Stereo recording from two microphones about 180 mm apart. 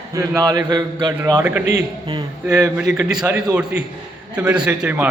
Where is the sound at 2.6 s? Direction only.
5° right (ahead or behind).